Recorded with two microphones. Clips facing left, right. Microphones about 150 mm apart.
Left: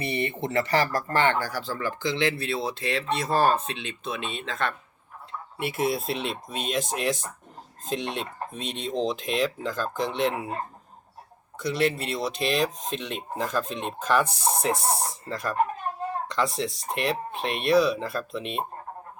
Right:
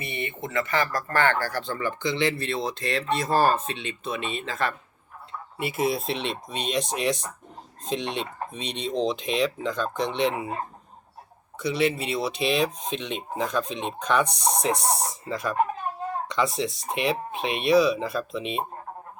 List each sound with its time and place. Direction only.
0.0 s speech: 35° left (ahead or behind); by 1.6 s 15° left (ahead or behind)
1.6 s speech: centre (ahead or behind)
11.6 s speech: centre (ahead or behind)